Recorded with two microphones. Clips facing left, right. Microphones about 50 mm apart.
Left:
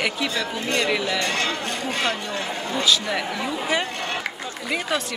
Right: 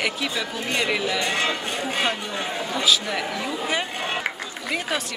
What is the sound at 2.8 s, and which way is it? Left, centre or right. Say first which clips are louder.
Speech: even; centre.